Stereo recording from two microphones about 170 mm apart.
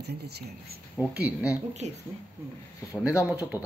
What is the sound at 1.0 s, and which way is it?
Speech, 10° right (ahead or behind).